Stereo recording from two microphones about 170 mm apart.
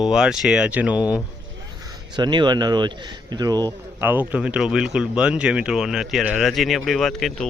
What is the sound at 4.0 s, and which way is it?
Speech, 10° right (ahead or behind).